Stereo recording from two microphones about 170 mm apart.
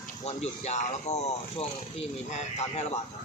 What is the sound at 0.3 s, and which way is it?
Speech, 40° left (ahead or behind).